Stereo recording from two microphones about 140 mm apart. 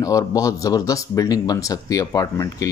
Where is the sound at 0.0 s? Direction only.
25° left (ahead or behind).